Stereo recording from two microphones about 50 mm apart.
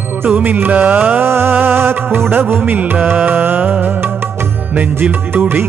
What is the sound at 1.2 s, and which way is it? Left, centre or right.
Music, right.